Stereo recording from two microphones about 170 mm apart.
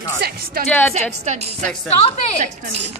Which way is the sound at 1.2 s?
45° right (ahead or behind).